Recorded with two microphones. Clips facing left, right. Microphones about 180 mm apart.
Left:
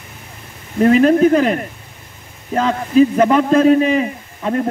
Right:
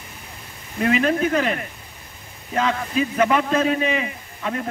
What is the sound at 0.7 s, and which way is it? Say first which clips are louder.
A man's voice: left 9 dB; 40° left (ahead or behind).